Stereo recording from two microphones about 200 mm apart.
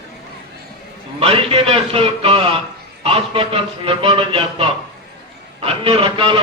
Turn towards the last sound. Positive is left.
turn(degrees=-25)  # may be behind; listen again after turning